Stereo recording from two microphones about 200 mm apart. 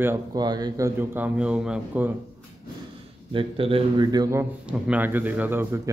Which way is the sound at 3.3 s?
25° right (ahead or behind).